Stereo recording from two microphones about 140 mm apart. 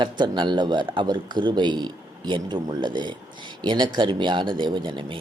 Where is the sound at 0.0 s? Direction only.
35° right (ahead or behind).